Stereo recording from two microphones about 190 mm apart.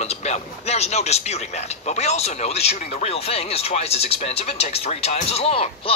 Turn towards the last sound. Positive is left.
turn(degrees=30)  # may be behind; listen again after turning